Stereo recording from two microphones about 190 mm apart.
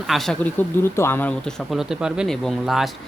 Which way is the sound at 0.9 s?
10° left (ahead or behind).